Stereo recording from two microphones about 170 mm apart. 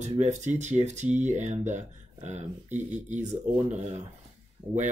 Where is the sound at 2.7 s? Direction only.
10° right (ahead or behind).